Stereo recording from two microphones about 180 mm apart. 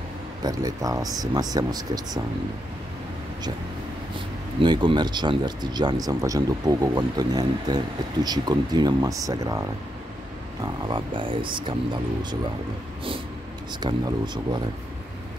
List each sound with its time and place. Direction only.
0.4 s speech: 20° right (ahead or behind)
4.6 s speech: 25° right (ahead or behind)
13.7 s speech: 25° right (ahead or behind)